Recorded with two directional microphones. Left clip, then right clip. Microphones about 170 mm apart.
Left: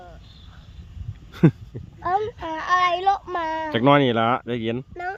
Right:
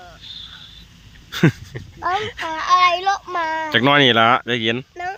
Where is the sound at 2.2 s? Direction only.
20° right (ahead or behind).